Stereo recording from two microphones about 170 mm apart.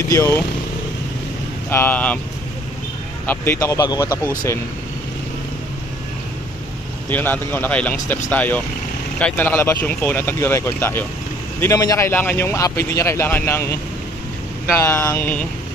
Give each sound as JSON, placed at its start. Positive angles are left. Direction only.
{"t": 0.1, "sound": "speech", "side_deg": 20}
{"t": 1.7, "sound": "a man's voice", "side_deg": 10}
{"t": 3.3, "sound": "speech", "side_deg": 15}
{"t": 7.1, "sound": "a man's voice", "side_deg": 10}
{"t": 14.8, "sound": "a man's voice", "side_deg": 15}